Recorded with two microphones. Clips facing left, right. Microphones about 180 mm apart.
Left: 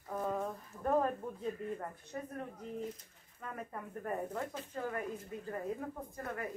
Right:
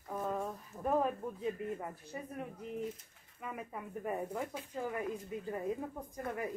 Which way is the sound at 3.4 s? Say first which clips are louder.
Right 1 dB; 10° right (ahead or behind).